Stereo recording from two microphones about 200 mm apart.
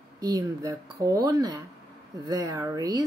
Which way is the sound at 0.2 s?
20° right (ahead or behind).